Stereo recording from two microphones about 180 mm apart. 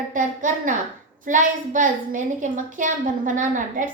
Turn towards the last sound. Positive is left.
turn(degrees=-45)  # may be behind; listen again after turning